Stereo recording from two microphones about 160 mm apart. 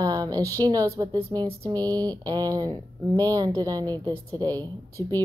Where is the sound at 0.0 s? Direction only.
25° right (ahead or behind).